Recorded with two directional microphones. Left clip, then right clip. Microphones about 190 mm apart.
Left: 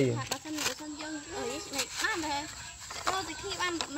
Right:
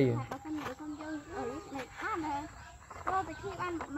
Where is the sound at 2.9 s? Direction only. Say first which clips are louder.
Left 3 dB; 10° left (ahead or behind).